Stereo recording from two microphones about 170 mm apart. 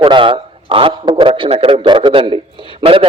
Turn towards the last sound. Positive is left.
turn(degrees=-30)  # may be behind; listen again after turning